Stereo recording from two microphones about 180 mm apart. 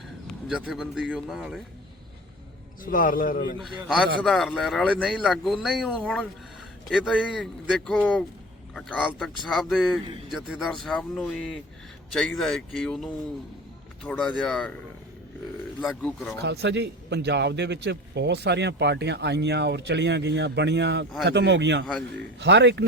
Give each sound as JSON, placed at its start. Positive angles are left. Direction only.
{"t": 0.3, "sound": "a man's voice", "side_deg": 0}
{"t": 2.8, "sound": "a man's voice", "side_deg": 50}
{"t": 3.6, "sound": "a man's voice", "side_deg": 0}
{"t": 10.1, "sound": "a man's voice", "side_deg": -30}
{"t": 10.3, "sound": "a man's voice", "side_deg": 0}
{"t": 15.8, "sound": "a man's voice", "side_deg": 5}
{"t": 16.4, "sound": "a man's voice", "side_deg": -70}